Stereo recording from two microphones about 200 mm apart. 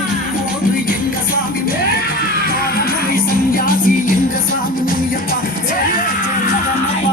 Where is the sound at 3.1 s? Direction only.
45° left (ahead or behind).